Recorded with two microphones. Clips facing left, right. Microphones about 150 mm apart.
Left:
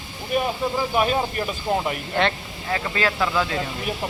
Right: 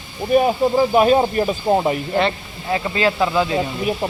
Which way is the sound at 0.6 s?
35° right (ahead or behind).